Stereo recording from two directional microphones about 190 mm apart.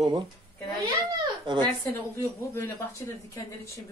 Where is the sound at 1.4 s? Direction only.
25° right (ahead or behind).